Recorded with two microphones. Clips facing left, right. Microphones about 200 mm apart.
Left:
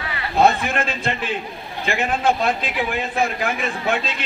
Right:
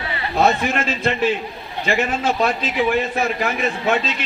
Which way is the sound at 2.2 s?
55° left (ahead or behind).